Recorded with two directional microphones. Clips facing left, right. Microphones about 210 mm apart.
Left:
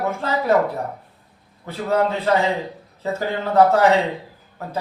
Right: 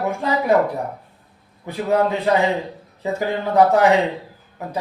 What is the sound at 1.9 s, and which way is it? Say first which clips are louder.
Speech: right 1 dB; 15° right (ahead or behind).